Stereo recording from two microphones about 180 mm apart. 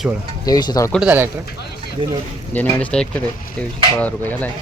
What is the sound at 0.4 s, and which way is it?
Speech, 20° left (ahead or behind).